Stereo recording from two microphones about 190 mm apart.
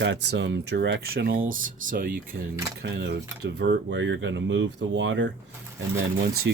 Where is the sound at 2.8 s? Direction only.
60° right (ahead or behind); by 5.2 s 80° right.